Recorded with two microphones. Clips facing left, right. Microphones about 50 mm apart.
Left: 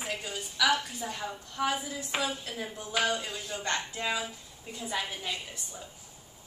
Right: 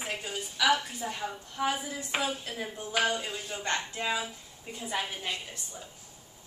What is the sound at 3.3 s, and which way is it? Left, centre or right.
Speech, right.